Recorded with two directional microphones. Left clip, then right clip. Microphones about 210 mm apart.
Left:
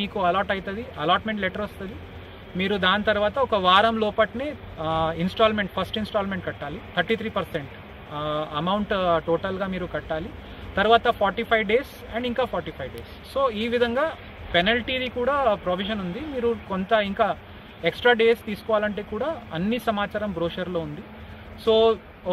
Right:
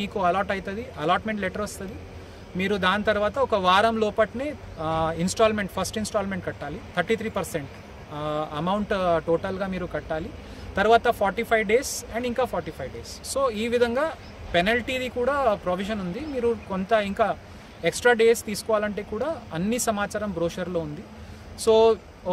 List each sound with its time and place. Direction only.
0.1 s speech: 20° right (ahead or behind)